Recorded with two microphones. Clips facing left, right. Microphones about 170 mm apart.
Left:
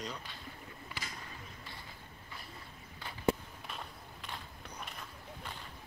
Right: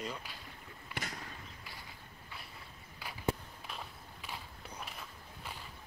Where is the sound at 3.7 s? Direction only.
5° right (ahead or behind).